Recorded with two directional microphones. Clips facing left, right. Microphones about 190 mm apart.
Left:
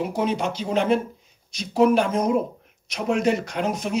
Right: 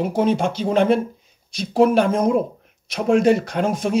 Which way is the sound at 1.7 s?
55° right (ahead or behind).